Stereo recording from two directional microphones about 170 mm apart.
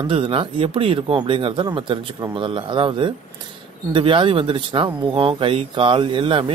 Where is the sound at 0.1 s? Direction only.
30° right (ahead or behind).